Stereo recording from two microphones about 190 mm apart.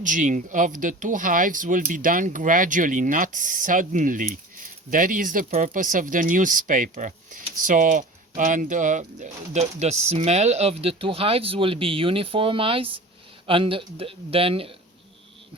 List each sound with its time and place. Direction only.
0.0 s speech: 45° right (ahead or behind)